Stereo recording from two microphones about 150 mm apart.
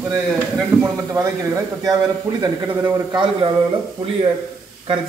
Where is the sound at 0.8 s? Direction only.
20° right (ahead or behind).